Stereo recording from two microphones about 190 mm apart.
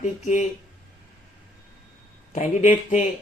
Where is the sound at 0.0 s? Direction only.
40° left (ahead or behind).